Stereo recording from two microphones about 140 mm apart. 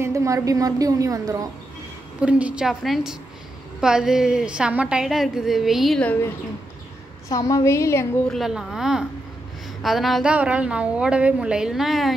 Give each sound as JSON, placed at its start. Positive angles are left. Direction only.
{"t": 0.0, "sound": "a woman's voice", "side_deg": -20}
{"t": 2.1, "sound": "a woman's voice", "side_deg": -10}
{"t": 7.2, "sound": "a woman's voice", "side_deg": 25}
{"t": 8.3, "sound": "a woman's voice", "side_deg": 0}